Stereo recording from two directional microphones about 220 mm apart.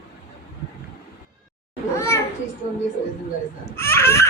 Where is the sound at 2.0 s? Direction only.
10° left (ahead or behind).